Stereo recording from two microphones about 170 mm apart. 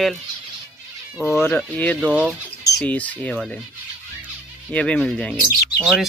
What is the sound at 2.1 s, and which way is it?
Speech, 5° right (ahead or behind).